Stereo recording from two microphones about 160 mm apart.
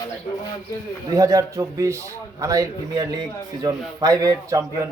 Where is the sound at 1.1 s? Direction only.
20° right (ahead or behind).